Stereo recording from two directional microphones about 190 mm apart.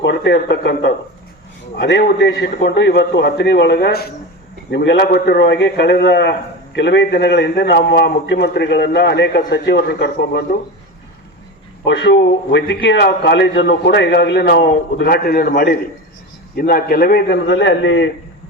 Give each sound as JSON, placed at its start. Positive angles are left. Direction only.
{"t": 0.0, "sound": "a man's voice", "side_deg": 65}
{"t": 11.9, "sound": "a man's voice", "side_deg": 65}